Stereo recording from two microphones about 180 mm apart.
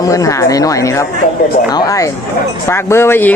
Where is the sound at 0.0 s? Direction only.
20° left (ahead or behind).